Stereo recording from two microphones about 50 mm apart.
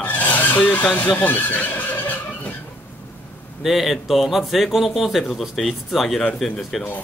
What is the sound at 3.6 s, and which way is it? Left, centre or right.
Speech, centre.